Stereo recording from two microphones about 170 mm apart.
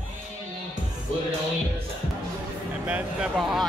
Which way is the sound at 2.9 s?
5° right (ahead or behind).